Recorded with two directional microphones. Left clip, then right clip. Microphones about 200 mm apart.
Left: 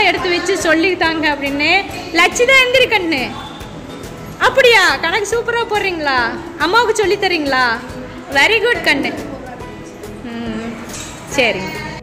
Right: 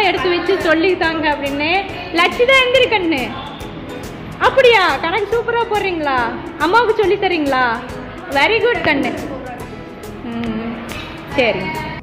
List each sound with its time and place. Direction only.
0.0 s a woman's voice: 25° left (ahead or behind)
4.4 s a woman's voice: 15° left (ahead or behind)
11.4 s a woman's voice: 15° left (ahead or behind)